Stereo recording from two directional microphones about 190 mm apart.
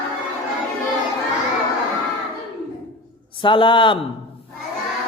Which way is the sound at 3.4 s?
25° left (ahead or behind).